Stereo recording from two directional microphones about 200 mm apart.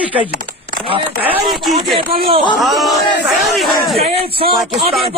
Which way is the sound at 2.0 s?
50° right (ahead or behind).